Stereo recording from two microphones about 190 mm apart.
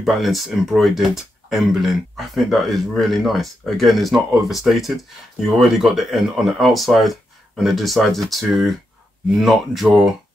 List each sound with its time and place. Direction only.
0.0 s speech: centre (ahead or behind)